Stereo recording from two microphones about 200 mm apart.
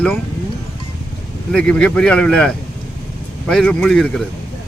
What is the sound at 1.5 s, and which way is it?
Speech, 5° left (ahead or behind).